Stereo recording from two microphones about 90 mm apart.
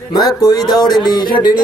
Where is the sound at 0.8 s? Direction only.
50° left (ahead or behind).